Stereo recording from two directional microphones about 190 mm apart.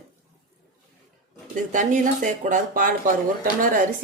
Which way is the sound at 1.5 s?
40° right (ahead or behind).